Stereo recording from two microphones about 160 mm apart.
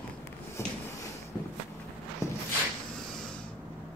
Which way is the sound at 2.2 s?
20° left (ahead or behind).